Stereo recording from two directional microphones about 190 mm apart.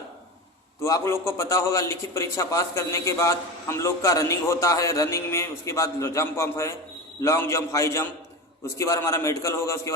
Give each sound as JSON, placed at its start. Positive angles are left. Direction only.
{"t": 0.8, "sound": "a man's voice", "side_deg": 15}